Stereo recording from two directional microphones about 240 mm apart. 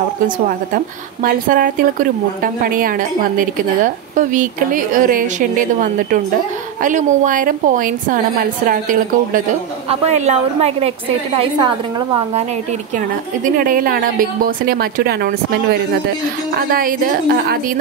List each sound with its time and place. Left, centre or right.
1.2 s a woman's voice: right
9.3 s a woman's voice: right
13.6 s a woman's voice: right